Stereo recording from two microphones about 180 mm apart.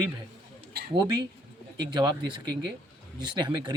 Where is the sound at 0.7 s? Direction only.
60° right (ahead or behind).